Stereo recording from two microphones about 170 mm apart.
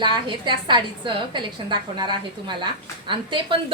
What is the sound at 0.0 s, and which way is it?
A woman's voice, 25° right (ahead or behind).